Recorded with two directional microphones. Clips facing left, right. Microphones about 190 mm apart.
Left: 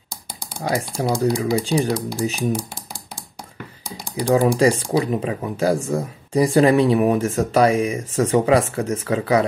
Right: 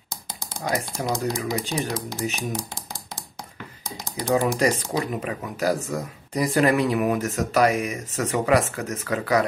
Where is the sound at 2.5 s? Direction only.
10° left (ahead or behind).